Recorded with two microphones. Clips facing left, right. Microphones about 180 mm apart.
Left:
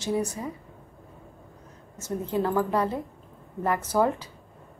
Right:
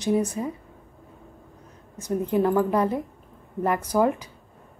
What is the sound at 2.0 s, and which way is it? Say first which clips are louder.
A woman's voice: right 5 dB; 15° right (ahead or behind).